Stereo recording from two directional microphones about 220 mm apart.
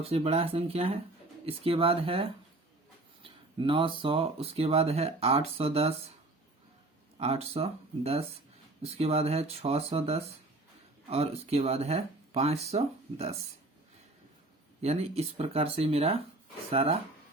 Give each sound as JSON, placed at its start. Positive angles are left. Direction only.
{"t": 0.0, "sound": "speech", "side_deg": -25}
{"t": 7.2, "sound": "speech", "side_deg": -30}
{"t": 14.8, "sound": "speech", "side_deg": -30}